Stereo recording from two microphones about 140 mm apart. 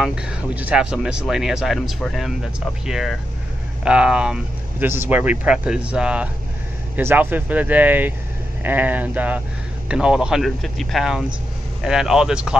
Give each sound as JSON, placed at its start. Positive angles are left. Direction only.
{"t": 0.0, "sound": "speech", "side_deg": -10}